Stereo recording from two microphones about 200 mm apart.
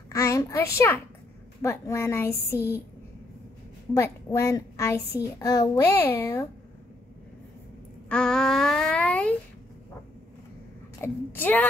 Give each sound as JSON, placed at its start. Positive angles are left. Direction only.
{"t": 0.1, "sound": "a child's voice", "side_deg": 15}
{"t": 3.9, "sound": "a child's voice", "side_deg": 15}
{"t": 8.1, "sound": "a sound", "side_deg": 5}
{"t": 11.0, "sound": "a child's voice", "side_deg": 10}